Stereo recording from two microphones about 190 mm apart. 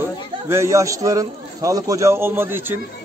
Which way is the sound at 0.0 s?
15° right (ahead or behind).